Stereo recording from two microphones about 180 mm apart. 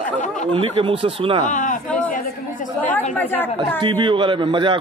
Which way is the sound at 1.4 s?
45° left (ahead or behind).